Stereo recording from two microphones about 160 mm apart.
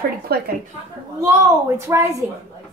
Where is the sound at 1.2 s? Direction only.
15° right (ahead or behind).